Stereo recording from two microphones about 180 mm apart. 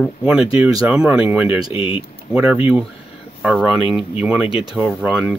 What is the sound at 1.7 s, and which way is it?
Speech, 30° left (ahead or behind).